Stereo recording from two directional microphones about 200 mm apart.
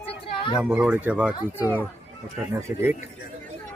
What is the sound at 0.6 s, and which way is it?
A child's voice, 5° right (ahead or behind).